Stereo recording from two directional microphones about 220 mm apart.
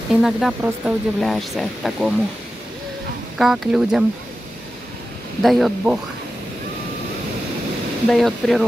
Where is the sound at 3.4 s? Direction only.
Centre (ahead or behind).